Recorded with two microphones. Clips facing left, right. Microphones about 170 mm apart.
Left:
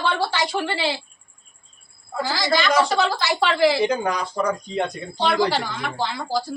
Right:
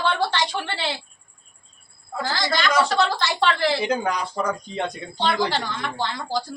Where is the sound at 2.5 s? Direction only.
5° left (ahead or behind).